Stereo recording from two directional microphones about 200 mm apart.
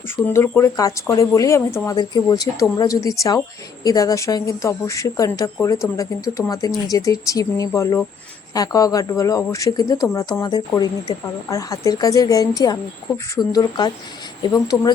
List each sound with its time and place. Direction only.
0.3 s a woman's voice: 10° left (ahead or behind)